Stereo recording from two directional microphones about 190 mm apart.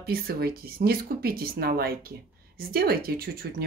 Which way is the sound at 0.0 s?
55° right (ahead or behind).